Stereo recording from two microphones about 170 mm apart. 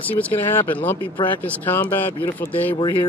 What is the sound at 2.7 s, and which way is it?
Speech, 30° left (ahead or behind).